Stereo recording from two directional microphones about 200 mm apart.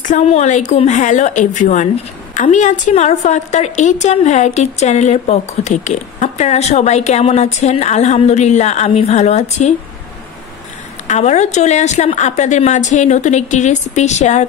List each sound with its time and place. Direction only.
0.0 s a woman's voice: 35° left (ahead or behind)
11.1 s a woman's voice: 35° left (ahead or behind)